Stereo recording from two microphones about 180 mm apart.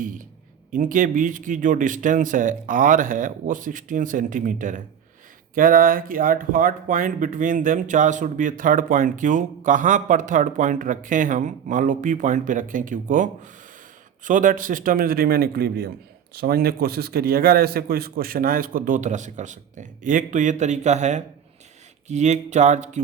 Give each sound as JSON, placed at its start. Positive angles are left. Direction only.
{"t": 0.0, "sound": "speech", "side_deg": -50}